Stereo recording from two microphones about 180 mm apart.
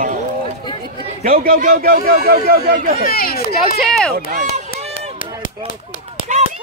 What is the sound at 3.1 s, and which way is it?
Speech, 55° left (ahead or behind).